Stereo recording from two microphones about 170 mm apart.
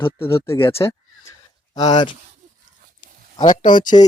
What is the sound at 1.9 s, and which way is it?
Speech, 25° left (ahead or behind).